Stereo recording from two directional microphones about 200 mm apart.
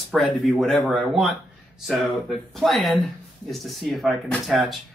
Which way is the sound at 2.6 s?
Centre (ahead or behind).